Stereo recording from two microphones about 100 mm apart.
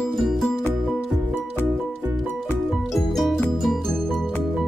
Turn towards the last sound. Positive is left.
turn(degrees=5)  # may be behind; listen again after turning